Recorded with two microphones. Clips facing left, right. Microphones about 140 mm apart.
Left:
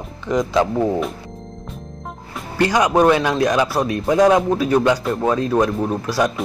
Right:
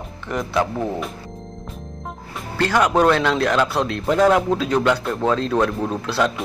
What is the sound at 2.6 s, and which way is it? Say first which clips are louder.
Speech: left 2 dB; 10° left (ahead or behind).